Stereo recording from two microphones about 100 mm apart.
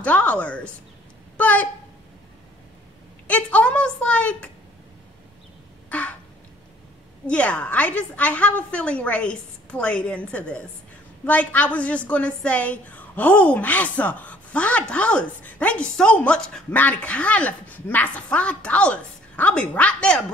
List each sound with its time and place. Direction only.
0.0 s speech: 15° left (ahead or behind)
3.3 s a woman's voice: 15° left (ahead or behind)
5.9 s a sound: 15° left (ahead or behind)
7.2 s a woman's voice: 10° left (ahead or behind)